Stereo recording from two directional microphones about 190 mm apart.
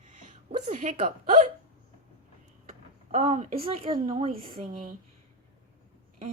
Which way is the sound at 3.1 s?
35° right (ahead or behind).